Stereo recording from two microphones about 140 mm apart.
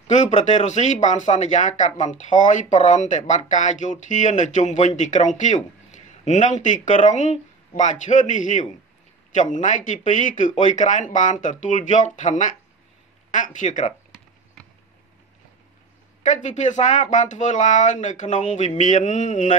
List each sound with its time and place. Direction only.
0.1 s speech: 55° left (ahead or behind)
16.2 s speech: 60° left (ahead or behind)